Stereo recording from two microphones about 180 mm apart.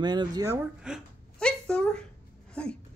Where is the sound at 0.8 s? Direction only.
Centre (ahead or behind).